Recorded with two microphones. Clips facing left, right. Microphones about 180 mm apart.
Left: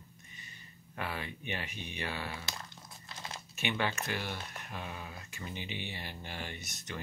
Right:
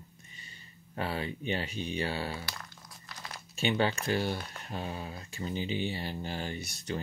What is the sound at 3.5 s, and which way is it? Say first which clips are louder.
Speech: right 6 dB; 30° right (ahead or behind).